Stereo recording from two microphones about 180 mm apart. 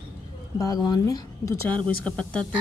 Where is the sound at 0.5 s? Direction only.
20° left (ahead or behind).